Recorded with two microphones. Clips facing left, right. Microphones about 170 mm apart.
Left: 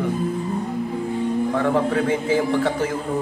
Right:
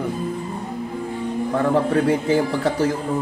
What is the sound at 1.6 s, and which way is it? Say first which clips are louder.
A man's voice: right 4 dB; 40° right (ahead or behind).